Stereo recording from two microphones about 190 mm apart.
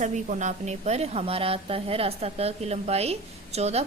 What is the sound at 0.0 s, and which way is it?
A woman's voice, 40° right (ahead or behind).